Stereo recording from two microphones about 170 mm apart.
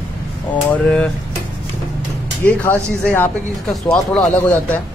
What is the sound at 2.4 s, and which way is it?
Speech, 15° left (ahead or behind).